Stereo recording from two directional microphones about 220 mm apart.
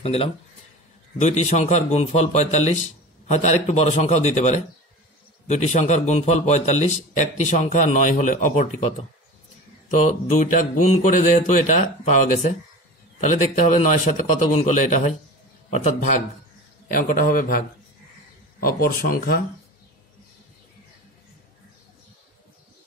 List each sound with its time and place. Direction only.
0.0 s a man's voice: 25° left (ahead or behind)